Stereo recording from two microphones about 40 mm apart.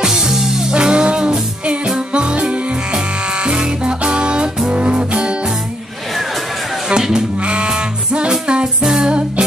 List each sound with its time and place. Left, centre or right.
0.0 s music: centre
0.7 s music: right
6.9 s music: centre
8.8 s music: centre